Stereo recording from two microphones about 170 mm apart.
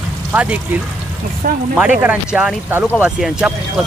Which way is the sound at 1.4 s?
55° right (ahead or behind).